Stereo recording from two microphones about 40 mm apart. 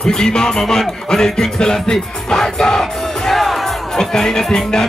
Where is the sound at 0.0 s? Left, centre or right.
Centre.